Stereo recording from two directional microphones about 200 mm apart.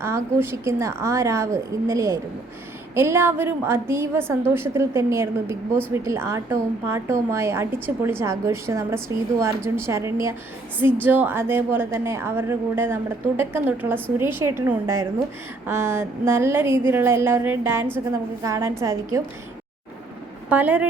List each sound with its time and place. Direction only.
0.0 s a woman's voice: 10° right (ahead or behind)
20.5 s a woman's voice: 5° right (ahead or behind)